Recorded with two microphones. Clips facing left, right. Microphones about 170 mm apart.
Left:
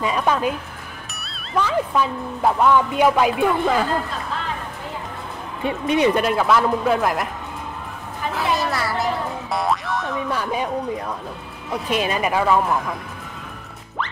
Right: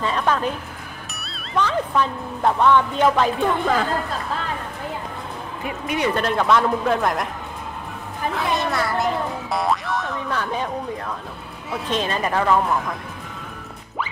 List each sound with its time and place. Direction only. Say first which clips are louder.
0.0 s a woman's voice: left 1 dB; 10° left (ahead or behind)
1.5 s a woman's voice: left 1 dB; 5° left (ahead or behind)
5.6 s speech: left 6 dB; 25° left (ahead or behind)
6.2 s speech: left 1 dB; 5° left (ahead or behind)
8.4 s music: left 1 dB; centre (ahead or behind)
11.9 s a woman's voice: left 2 dB; 10° left (ahead or behind)